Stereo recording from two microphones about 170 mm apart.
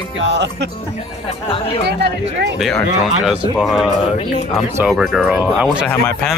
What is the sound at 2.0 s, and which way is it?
Speech, 80° right.